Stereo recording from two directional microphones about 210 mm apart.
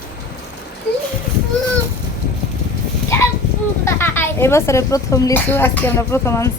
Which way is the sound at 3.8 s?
10° left (ahead or behind).